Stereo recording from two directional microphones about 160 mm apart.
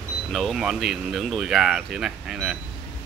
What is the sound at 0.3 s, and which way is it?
Speech, centre (ahead or behind).